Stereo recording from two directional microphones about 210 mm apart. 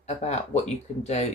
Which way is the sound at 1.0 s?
30° left (ahead or behind).